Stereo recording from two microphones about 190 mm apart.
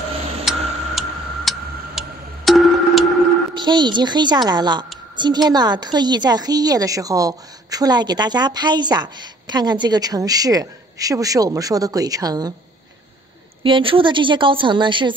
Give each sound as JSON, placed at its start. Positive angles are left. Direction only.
{"t": 0.5, "sound": "tick-tock", "side_deg": 0}
{"t": 3.5, "sound": "a woman's voice", "side_deg": -25}
{"t": 13.6, "sound": "a woman's voice", "side_deg": -25}